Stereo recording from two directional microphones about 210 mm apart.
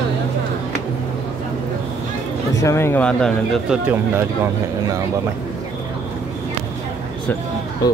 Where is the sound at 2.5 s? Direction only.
15° left (ahead or behind).